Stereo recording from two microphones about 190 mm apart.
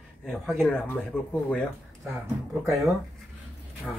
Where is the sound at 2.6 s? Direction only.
Centre (ahead or behind).